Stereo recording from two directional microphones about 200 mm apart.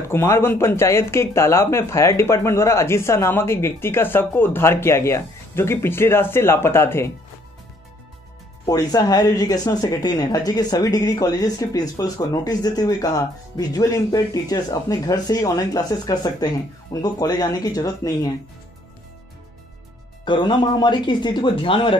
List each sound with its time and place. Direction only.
0.0 s speech: 15° left (ahead or behind)
8.6 s speech: 20° left (ahead or behind)
20.2 s speech: 20° left (ahead or behind)